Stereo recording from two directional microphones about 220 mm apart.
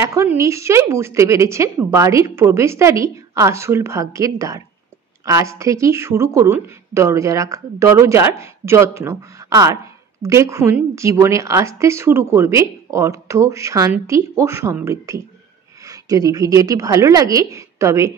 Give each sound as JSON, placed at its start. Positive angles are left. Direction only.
{"t": 0.0, "sound": "a woman's voice", "side_deg": -10}